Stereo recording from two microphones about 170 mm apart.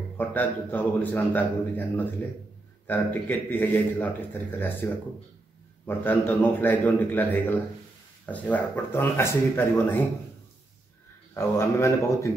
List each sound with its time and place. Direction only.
0.2 s a man's voice: 10° left (ahead or behind)
5.9 s a man's voice: 10° left (ahead or behind)
11.3 s a man's voice: 15° left (ahead or behind)